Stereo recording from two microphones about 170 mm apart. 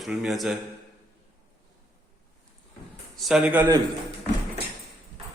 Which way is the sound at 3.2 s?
5° right (ahead or behind).